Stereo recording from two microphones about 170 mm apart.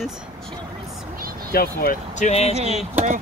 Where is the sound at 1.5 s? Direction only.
60° left (ahead or behind).